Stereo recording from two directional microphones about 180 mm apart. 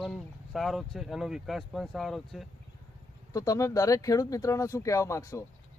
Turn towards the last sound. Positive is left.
turn(degrees=15)  # may be behind; listen again after turning